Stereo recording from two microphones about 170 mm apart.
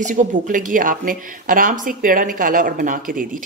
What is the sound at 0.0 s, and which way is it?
Speech, 50° right (ahead or behind).